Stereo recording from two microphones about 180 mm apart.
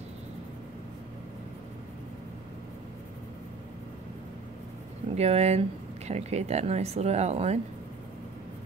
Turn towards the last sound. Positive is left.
turn(degrees=-35)  # may be behind; listen again after turning